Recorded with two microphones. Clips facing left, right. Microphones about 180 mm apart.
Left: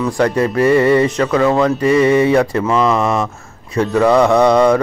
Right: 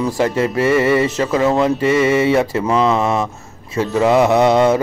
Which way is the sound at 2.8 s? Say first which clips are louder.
Left 1 dB; 5° right (ahead or behind).